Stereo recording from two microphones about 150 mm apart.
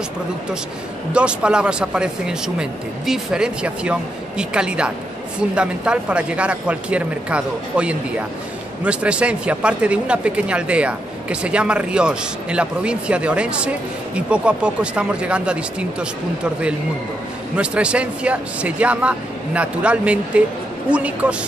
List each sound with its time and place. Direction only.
1.1 s a man's voice: 5° right (ahead or behind)
17.6 s a man's voice: 10° right (ahead or behind)